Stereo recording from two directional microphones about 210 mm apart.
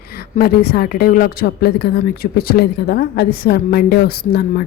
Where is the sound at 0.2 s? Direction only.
45° left (ahead or behind).